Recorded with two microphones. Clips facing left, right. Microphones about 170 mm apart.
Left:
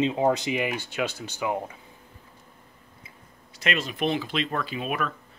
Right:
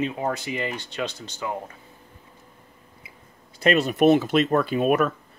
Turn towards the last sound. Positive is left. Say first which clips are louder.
# right 9 dB
turn(degrees=-45)  # may be behind; listen again after turning